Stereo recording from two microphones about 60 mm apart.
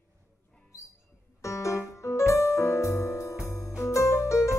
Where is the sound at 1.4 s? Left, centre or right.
Left.